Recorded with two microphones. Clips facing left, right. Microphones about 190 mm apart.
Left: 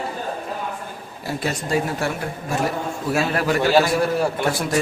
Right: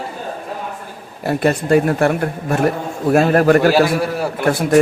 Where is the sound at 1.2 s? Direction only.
60° right (ahead or behind).